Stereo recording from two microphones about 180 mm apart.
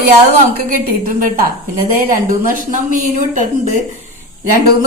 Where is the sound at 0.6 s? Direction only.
50° right (ahead or behind).